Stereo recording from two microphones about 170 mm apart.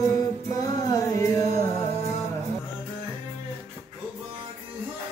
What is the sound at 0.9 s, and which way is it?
Music, 20° left (ahead or behind).